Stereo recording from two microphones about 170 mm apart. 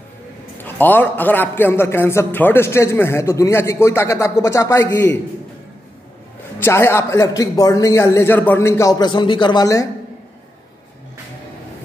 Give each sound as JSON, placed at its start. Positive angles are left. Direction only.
{"t": 0.6, "sound": "a man's voice", "side_deg": 10}
{"t": 6.6, "sound": "a man's voice", "side_deg": 15}